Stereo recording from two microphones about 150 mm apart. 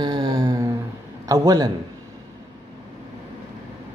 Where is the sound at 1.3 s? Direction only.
25° right (ahead or behind).